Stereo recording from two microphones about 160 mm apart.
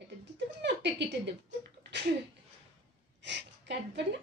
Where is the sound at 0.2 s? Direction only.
90° right.